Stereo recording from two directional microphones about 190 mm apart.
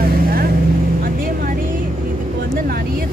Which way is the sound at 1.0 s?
50° right (ahead or behind).